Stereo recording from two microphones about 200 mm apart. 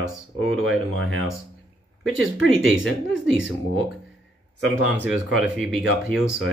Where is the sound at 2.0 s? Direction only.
80° right.